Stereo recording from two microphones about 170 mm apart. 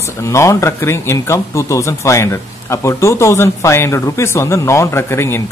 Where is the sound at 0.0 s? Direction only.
15° left (ahead or behind).